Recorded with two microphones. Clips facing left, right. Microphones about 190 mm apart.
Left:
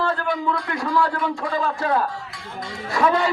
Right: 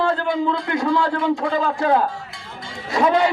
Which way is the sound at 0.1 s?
25° right (ahead or behind).